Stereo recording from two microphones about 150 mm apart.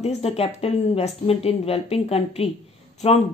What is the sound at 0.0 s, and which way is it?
A woman's voice, 45° left (ahead or behind).